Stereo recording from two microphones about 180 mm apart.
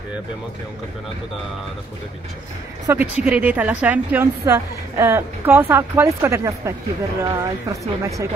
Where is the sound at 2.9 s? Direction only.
10° right (ahead or behind).